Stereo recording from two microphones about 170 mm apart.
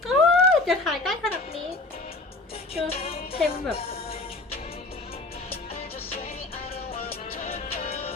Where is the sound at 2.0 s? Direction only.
35° left (ahead or behind).